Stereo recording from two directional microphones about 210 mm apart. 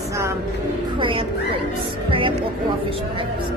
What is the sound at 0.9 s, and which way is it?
Speech, 25° right (ahead or behind).